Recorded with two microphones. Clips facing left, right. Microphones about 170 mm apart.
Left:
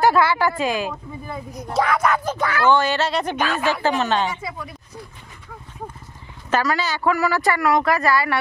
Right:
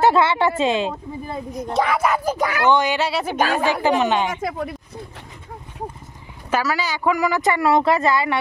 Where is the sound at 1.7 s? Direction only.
5° right (ahead or behind).